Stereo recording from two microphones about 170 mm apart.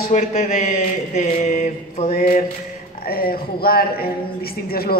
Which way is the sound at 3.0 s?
60° left (ahead or behind).